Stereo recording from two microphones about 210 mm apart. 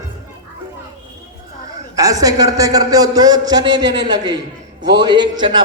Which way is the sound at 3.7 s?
60° right (ahead or behind).